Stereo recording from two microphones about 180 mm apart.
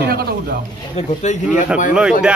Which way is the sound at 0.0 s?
60° right (ahead or behind).